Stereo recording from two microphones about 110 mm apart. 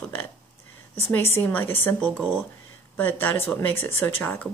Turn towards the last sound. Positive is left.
turn(degrees=20)  # may be behind; listen again after turning